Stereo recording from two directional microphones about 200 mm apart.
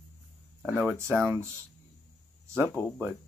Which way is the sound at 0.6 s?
5° right (ahead or behind).